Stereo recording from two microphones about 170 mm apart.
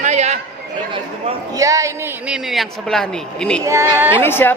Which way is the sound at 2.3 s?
Centre (ahead or behind).